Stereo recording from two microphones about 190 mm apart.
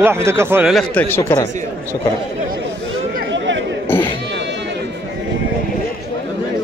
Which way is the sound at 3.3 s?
75° right (ahead or behind).